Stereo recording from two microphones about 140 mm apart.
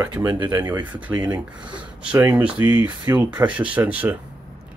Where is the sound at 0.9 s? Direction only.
10° right (ahead or behind).